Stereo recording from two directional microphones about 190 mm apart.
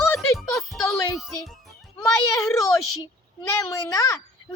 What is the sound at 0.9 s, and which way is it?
Music, 15° left (ahead or behind).